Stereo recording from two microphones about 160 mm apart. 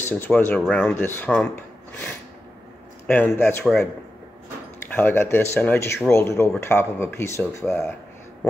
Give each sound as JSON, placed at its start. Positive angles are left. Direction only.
{"t": 0.0, "sound": "speech", "side_deg": 10}
{"t": 0.6, "sound": "speech", "side_deg": 5}
{"t": 4.9, "sound": "speech", "side_deg": 15}